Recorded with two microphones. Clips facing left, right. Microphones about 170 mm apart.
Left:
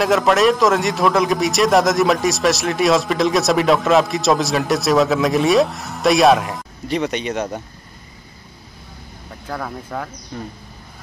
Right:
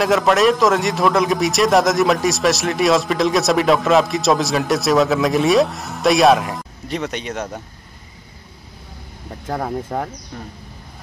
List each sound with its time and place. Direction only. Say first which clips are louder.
0.0 s a man's voice: even; centre (ahead or behind)
9.5 s speech: right 4 dB; 30° right (ahead or behind)